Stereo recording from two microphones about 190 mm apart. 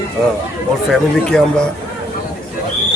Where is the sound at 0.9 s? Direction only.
5° left (ahead or behind).